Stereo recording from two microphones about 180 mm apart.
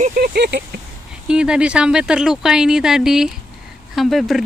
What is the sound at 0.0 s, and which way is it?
Speech, 50° right (ahead or behind).